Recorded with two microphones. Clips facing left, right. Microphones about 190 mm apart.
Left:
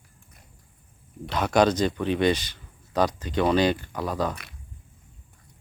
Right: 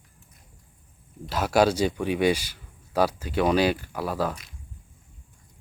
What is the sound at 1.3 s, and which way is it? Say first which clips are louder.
Speech: even; 5° right (ahead or behind).